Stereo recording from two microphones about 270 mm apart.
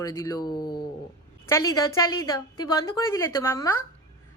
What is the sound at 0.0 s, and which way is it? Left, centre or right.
A woman's voice, centre.